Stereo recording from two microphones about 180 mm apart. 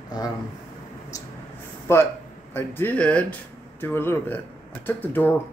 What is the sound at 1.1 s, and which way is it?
Speech, 20° left (ahead or behind).